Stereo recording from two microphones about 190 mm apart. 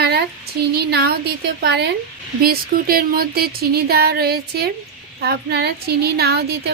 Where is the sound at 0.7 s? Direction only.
55° right (ahead or behind).